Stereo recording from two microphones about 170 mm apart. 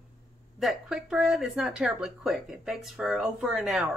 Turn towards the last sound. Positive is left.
turn(degrees=0)  # may be behind; listen again after turning